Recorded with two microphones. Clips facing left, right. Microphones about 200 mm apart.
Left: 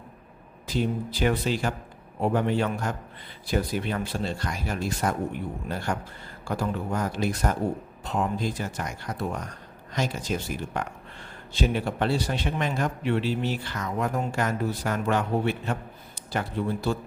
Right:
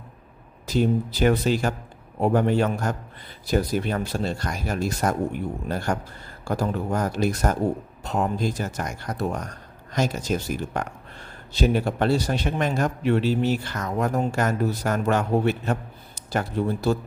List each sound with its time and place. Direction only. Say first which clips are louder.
0.7 s a man's voice: right 5 dB; 45° right (ahead or behind)